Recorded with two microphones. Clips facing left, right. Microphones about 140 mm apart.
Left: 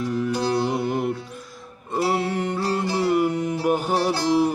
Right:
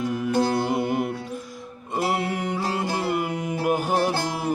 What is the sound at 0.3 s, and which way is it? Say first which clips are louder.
Music: right 3 dB; 50° right (ahead or behind).